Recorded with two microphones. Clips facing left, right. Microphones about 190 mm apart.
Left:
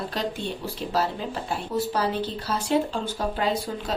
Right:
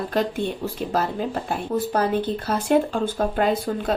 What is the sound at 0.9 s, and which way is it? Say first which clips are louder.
A woman's voice: right 2 dB; 50° right (ahead or behind).